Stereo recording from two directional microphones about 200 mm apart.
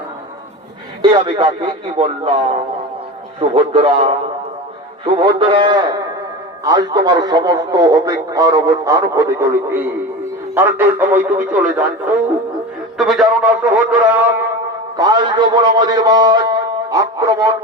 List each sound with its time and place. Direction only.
1.0 s a man's voice: 25° right (ahead or behind); by 11.9 s 5° right (ahead or behind)
13.0 s a man's voice: centre (ahead or behind)
14.9 s a man's voice: 20° right (ahead or behind)